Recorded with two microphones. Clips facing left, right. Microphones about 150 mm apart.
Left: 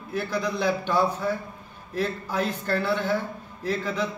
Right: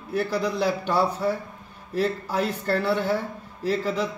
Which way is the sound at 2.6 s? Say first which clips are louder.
Right 3 dB; 35° right (ahead or behind).